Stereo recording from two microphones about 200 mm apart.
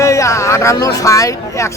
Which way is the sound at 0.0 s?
15° left (ahead or behind).